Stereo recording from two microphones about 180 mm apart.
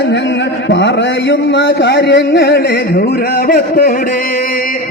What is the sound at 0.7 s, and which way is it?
Speech, 80° left.